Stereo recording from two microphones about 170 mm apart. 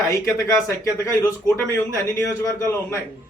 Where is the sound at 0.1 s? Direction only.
20° left (ahead or behind).